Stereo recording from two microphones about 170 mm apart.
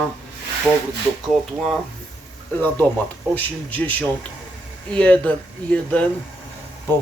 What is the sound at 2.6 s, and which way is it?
Speech, 10° left (ahead or behind).